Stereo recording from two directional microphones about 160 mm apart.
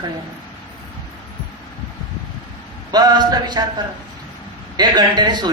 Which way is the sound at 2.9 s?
25° right (ahead or behind).